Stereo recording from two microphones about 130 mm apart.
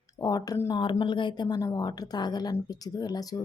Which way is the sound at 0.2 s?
30° left (ahead or behind).